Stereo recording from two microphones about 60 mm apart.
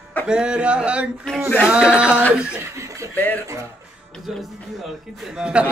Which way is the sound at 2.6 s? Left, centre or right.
Right.